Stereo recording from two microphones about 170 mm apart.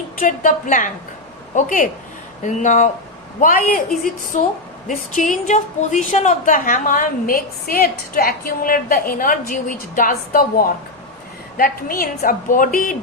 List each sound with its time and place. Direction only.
0.2 s a woman's voice: 50° left (ahead or behind)